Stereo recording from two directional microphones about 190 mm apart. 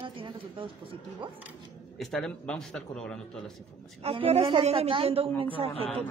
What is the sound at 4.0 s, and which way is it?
A man's voice, 30° right (ahead or behind).